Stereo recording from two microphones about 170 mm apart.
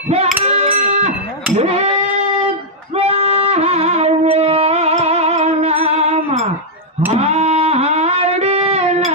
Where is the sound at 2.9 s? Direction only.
35° right (ahead or behind).